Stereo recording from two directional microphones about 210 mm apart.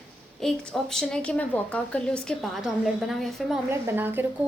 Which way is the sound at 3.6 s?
10° right (ahead or behind).